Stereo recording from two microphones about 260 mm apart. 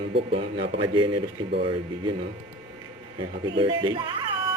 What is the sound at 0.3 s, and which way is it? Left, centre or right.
Speech, right.